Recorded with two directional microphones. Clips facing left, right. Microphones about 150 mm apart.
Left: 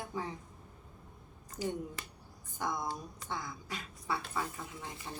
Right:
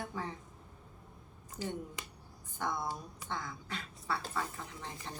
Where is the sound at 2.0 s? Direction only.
15° right (ahead or behind).